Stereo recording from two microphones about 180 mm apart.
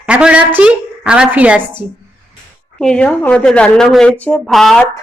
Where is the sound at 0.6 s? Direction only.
5° right (ahead or behind).